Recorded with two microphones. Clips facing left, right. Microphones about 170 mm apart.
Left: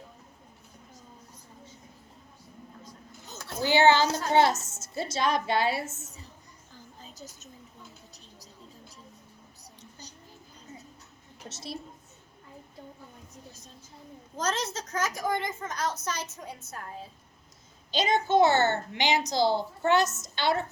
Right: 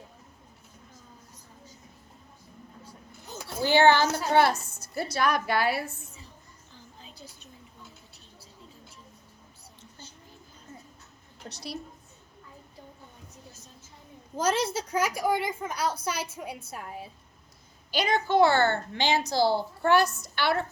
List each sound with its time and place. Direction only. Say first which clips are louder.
3.6 s a woman's voice: right 1 dB; 15° left (ahead or behind)
7.0 s a sound: left 3 dB; 45° left (ahead or behind)
11.4 s a child's voice: right 1 dB; 25° left (ahead or behind)
14.3 s a woman's voice: right 5 dB; 10° right (ahead or behind)
17.9 s a child's voice: even; 20° left (ahead or behind)